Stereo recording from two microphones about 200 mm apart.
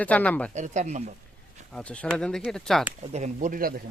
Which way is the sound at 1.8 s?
5° left (ahead or behind).